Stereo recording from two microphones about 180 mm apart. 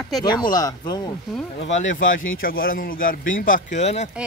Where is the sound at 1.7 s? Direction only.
45° left (ahead or behind).